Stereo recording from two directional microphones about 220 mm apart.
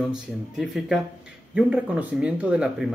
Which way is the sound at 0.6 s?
Centre (ahead or behind).